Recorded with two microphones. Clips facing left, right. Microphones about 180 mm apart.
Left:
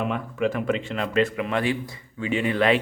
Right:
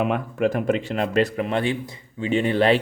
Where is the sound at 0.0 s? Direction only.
50° right (ahead or behind).